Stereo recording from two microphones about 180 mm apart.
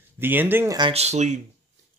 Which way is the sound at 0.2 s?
10° right (ahead or behind).